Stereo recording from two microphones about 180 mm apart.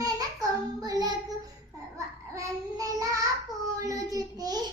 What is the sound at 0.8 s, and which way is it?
Child singing, 20° right (ahead or behind).